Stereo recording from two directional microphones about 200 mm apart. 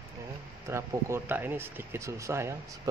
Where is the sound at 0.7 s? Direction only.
15° right (ahead or behind).